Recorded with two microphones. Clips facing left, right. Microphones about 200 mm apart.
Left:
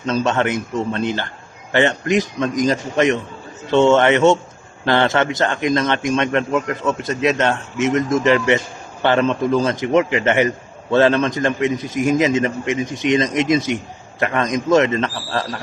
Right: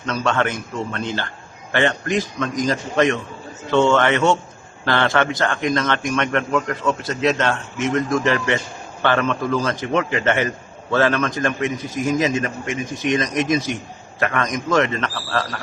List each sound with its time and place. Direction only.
0.0 s a man's voice: 20° left (ahead or behind)